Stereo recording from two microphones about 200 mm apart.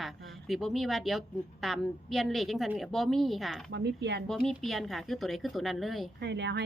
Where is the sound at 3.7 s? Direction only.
55° right (ahead or behind).